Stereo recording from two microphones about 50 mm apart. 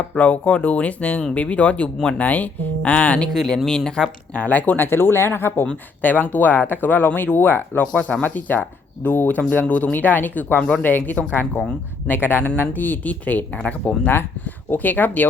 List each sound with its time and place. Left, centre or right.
0.2 s speech: left
3.3 s speech: centre
4.4 s speech: left
6.0 s speech: left
7.9 s speech: left
14.7 s speech: left